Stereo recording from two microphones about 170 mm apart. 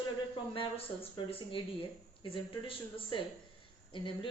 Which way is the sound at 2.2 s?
30° left (ahead or behind).